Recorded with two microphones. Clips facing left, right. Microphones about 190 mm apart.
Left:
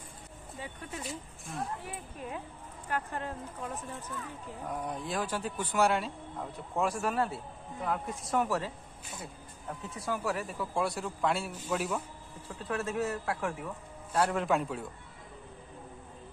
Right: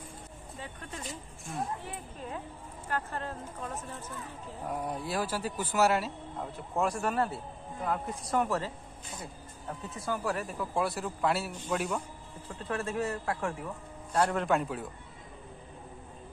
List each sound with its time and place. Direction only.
0.6 s speech: 10° left (ahead or behind)
2.9 s speech: 15° left (ahead or behind)
4.6 s speech: 5° right (ahead or behind)
9.7 s speech: centre (ahead or behind)